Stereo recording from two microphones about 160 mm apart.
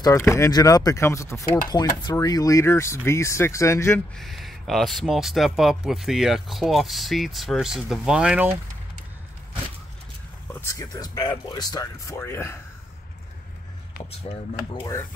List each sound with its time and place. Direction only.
0.2 s speech: 20° left (ahead or behind)
4.2 s speech: centre (ahead or behind)
10.5 s speech: 20° left (ahead or behind)
14.3 s speech: 35° left (ahead or behind)